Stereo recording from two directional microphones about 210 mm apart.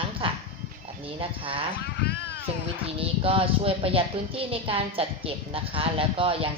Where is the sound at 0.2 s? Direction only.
25° right (ahead or behind).